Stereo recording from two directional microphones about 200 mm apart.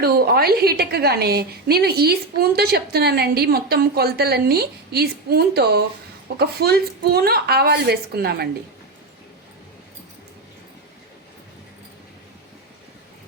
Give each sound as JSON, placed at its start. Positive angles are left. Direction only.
{"t": 0.0, "sound": "a woman's voice", "side_deg": -50}